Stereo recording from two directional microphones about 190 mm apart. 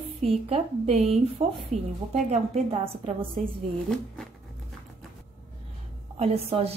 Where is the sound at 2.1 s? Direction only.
35° right (ahead or behind).